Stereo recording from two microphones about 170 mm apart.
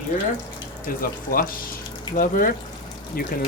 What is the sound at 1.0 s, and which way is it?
Speech, 55° left (ahead or behind).